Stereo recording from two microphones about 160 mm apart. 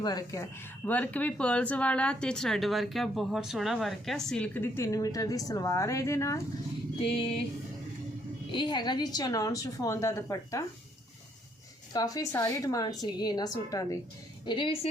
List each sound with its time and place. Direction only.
0.0 s a woman's voice: 25° left (ahead or behind)
0.9 s speech: 10° left (ahead or behind)
8.5 s a woman's voice: 30° left (ahead or behind)
11.9 s a woman's voice: 20° left (ahead or behind)